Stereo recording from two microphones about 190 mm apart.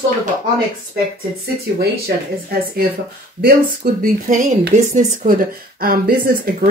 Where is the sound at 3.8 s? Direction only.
50° right (ahead or behind).